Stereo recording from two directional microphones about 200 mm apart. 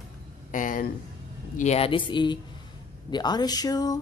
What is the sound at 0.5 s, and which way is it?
Speech, 40° left (ahead or behind).